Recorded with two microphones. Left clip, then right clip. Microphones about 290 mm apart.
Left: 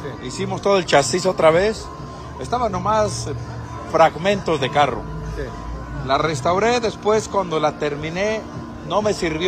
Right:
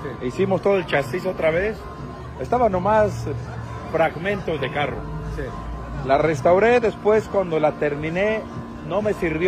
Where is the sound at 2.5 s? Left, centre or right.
Centre.